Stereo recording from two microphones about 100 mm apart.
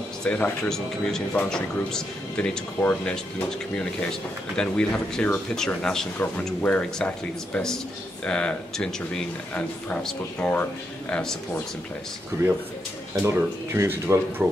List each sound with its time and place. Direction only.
0.2 s speech: 10° left (ahead or behind)
13.2 s speech: 25° right (ahead or behind)